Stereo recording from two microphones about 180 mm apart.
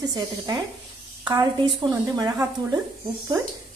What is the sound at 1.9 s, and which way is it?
Speech, 15° right (ahead or behind).